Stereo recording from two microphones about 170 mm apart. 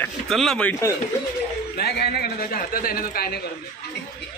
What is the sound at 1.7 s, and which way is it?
A man's voice, 70° left (ahead or behind).